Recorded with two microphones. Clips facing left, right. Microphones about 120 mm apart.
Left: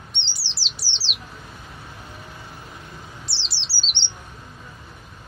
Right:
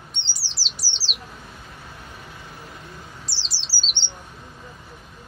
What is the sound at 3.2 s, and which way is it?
Bird, 40° right (ahead or behind).